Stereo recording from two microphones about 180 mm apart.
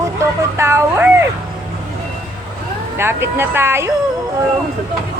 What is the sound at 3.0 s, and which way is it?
Speech, 15° right (ahead or behind).